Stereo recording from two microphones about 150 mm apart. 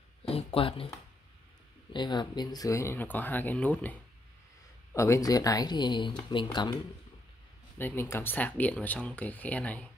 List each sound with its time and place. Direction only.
0.3 s a sound: 35° left (ahead or behind)
1.9 s speech: 30° left (ahead or behind); by 3.9 s 10° left (ahead or behind)
4.9 s speech: 20° left (ahead or behind)
7.7 s speech: 15° left (ahead or behind)